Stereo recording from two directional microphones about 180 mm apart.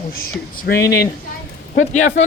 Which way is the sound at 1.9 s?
40° left (ahead or behind).